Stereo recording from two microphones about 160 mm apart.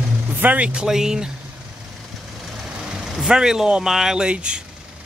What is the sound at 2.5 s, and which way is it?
Speech, 5° right (ahead or behind).